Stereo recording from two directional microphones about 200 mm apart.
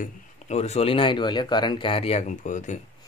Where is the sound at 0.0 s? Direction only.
35° left (ahead or behind).